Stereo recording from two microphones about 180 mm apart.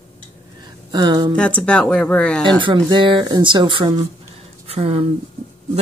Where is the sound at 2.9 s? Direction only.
25° right (ahead or behind).